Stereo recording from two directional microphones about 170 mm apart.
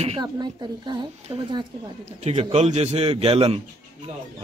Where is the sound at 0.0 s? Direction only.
30° right (ahead or behind).